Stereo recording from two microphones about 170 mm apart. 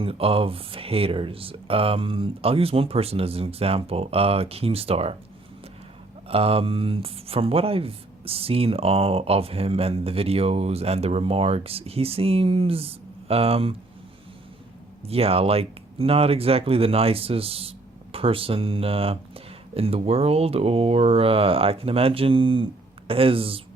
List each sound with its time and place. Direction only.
0.0 s speech: 35° right (ahead or behind)
6.2 s speech: 35° right (ahead or behind)
15.0 s speech: 35° right (ahead or behind)